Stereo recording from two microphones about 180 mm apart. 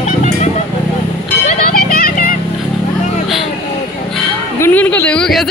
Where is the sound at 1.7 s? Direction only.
55° left (ahead or behind).